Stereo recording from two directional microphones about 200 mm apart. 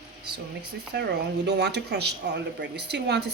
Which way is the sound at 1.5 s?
60° right (ahead or behind).